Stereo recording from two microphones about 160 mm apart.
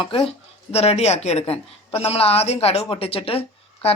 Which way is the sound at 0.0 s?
35° left (ahead or behind).